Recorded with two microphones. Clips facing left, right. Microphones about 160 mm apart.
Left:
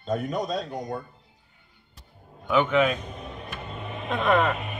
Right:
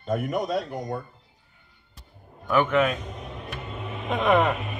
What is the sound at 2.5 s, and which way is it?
Speech, centre (ahead or behind).